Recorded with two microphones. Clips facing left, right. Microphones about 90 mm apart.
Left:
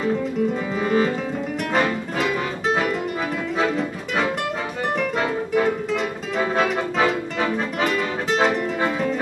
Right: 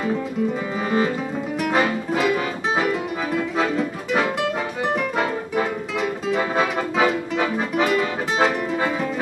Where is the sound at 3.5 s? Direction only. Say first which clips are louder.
Even; centre (ahead or behind).